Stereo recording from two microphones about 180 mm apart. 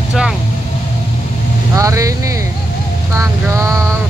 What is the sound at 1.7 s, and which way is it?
Speech, 20° right (ahead or behind).